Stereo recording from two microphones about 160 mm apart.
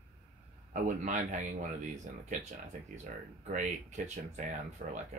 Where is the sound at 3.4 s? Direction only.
50° right (ahead or behind).